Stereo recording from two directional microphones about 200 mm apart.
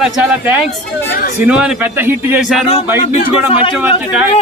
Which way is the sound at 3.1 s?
25° left (ahead or behind).